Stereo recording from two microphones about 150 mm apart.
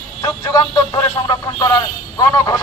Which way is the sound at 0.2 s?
25° left (ahead or behind).